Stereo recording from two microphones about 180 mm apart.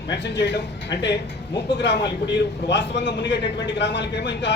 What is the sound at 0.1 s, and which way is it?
A man's voice, 70° left (ahead or behind).